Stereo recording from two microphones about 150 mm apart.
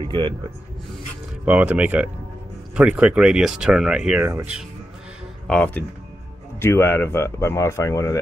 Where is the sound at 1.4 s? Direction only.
10° right (ahead or behind).